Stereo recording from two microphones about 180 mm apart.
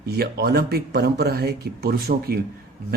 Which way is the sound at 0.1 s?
60° right (ahead or behind).